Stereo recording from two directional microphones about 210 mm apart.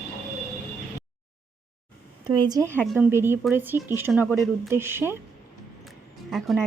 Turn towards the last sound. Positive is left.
turn(degrees=0)  # may be behind; listen again after turning